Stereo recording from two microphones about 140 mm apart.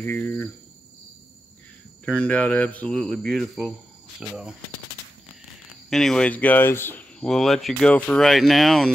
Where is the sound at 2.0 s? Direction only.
10° left (ahead or behind); by 4.4 s 5° right (ahead or behind).